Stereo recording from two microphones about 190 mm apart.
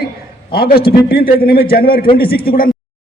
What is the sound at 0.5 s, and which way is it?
A man's voice, 50° left (ahead or behind).